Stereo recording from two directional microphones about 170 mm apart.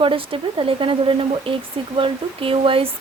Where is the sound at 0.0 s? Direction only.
30° right (ahead or behind).